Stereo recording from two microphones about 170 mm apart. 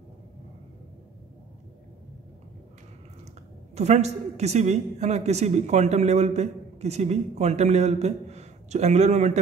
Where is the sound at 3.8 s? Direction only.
40° right (ahead or behind).